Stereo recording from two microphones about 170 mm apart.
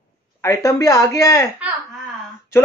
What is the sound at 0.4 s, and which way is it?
Speech, 15° left (ahead or behind).